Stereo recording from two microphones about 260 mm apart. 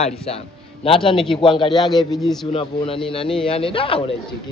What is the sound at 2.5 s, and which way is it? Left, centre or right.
A man's voice, left.